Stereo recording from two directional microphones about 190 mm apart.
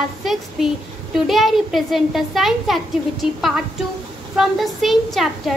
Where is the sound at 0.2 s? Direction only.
Centre (ahead or behind).